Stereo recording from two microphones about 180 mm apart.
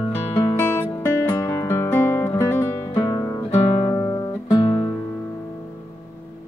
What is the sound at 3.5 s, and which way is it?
Music, 35° left (ahead or behind).